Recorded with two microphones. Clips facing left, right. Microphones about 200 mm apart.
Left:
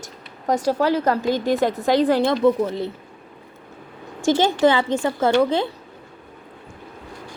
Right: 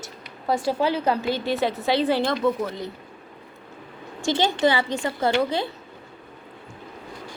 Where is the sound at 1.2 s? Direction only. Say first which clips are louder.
Left 4 dB; 15° left (ahead or behind).